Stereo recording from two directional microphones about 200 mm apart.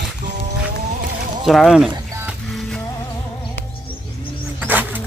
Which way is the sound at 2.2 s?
5° right (ahead or behind).